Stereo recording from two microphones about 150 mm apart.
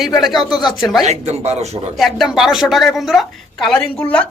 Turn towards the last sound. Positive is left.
turn(degrees=10)  # may be behind; listen again after turning